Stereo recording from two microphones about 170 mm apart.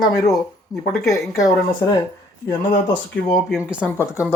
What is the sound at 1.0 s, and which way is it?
Speech, 20° left (ahead or behind).